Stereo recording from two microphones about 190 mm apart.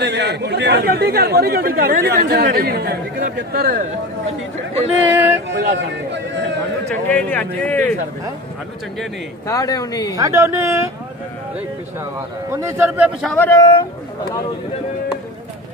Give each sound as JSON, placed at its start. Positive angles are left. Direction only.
{"t": 0.0, "sound": "speech", "side_deg": -65}
{"t": 5.1, "sound": "a man's voice", "side_deg": -10}
{"t": 5.8, "sound": "a sound", "side_deg": -70}
{"t": 7.1, "sound": "speech", "side_deg": 10}
{"t": 9.5, "sound": "speech", "side_deg": 20}
{"t": 10.1, "sound": "a man's voice", "side_deg": -15}
{"t": 12.4, "sound": "a man's voice", "side_deg": -15}
{"t": 13.3, "sound": "speech", "side_deg": 10}
{"t": 13.6, "sound": "speech", "side_deg": 25}